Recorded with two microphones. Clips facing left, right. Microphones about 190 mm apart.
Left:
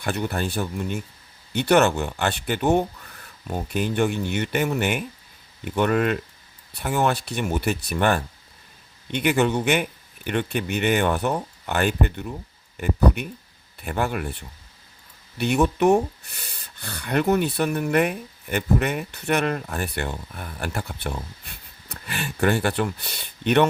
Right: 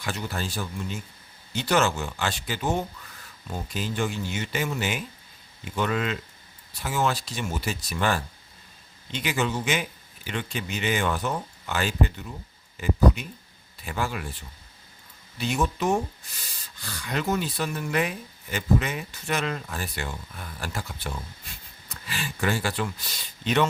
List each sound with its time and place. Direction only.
0.0 s speech: 60° left (ahead or behind)